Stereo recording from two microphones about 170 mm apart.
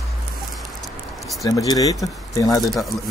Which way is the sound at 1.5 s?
20° left (ahead or behind).